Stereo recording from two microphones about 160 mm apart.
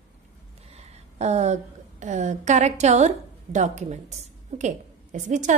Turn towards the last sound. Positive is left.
turn(degrees=-50)  # may be behind; listen again after turning